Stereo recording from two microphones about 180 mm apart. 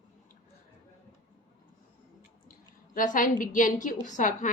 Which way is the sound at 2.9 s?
50° left (ahead or behind).